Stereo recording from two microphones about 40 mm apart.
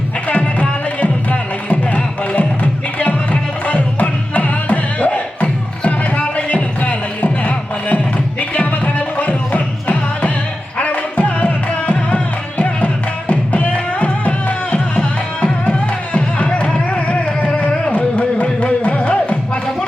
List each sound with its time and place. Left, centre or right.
0.3 s music: left
3.7 s music: left